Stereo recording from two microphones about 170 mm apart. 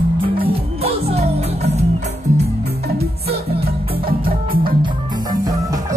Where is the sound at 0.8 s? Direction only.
35° right (ahead or behind).